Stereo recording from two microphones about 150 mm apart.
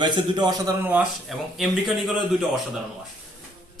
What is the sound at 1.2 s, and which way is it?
Speech, centre (ahead or behind).